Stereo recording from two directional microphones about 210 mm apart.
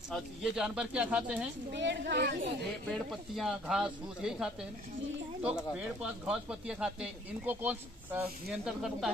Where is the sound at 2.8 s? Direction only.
Centre (ahead or behind).